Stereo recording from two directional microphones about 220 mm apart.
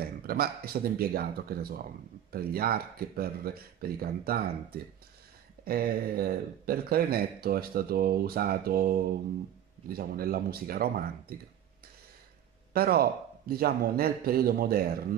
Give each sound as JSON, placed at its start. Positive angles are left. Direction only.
{"t": 0.0, "sound": "speech", "side_deg": -45}
{"t": 12.7, "sound": "speech", "side_deg": -45}